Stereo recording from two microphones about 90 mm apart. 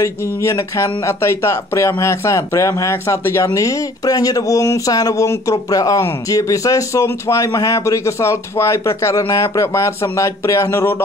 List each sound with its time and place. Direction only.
0.0 s speech: 30° left (ahead or behind)